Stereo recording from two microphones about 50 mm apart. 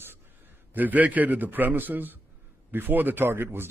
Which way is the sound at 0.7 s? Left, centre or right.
Right.